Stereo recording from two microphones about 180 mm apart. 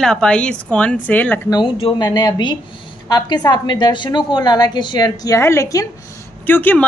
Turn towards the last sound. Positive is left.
turn(degrees=10)  # may be behind; listen again after turning